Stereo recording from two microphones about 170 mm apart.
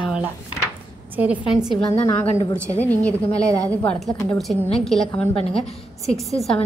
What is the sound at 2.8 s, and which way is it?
A woman's voice, 10° left (ahead or behind).